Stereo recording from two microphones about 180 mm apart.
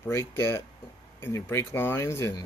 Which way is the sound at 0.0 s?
15° left (ahead or behind).